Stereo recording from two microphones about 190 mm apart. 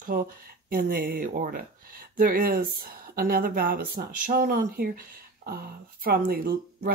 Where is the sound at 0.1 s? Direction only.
50° right (ahead or behind).